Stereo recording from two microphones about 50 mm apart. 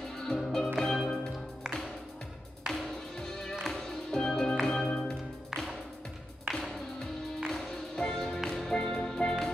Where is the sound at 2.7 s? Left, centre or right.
Centre.